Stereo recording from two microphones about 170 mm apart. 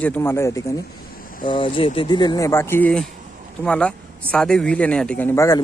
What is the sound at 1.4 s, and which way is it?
A man's voice, 30° left (ahead or behind).